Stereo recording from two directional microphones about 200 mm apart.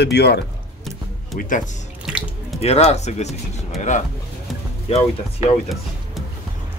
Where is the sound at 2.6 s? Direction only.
30° left (ahead or behind).